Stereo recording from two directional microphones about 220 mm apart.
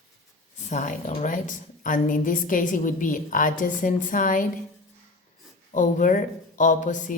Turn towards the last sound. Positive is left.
turn(degrees=35)  # may be behind; listen again after turning